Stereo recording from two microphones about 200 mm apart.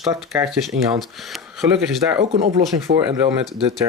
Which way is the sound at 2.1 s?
30° right (ahead or behind).